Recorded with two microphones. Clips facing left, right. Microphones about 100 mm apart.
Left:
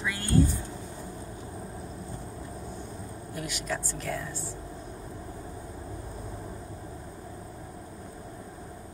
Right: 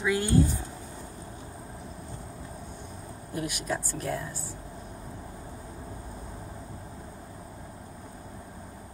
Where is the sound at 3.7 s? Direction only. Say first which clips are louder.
Even; 20° right (ahead or behind).